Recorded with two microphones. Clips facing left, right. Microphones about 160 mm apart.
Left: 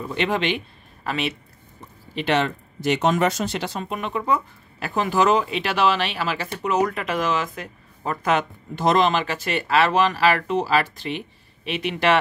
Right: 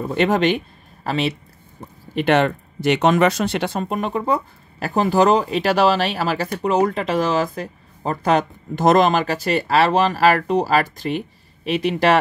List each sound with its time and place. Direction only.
0.0 s speech: 45° right (ahead or behind)
1.0 s speech: 30° right (ahead or behind)
2.1 s speech: 55° right (ahead or behind); by 12.2 s 40° right (ahead or behind)